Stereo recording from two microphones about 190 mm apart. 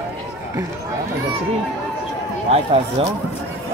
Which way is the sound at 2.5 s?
35° right (ahead or behind).